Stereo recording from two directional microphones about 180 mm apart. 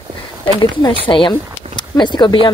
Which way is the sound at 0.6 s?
20° left (ahead or behind).